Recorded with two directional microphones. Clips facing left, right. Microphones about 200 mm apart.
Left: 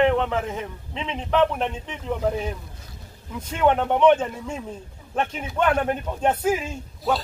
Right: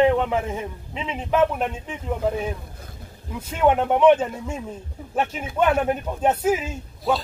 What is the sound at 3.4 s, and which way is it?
A man's voice, 10° right (ahead or behind).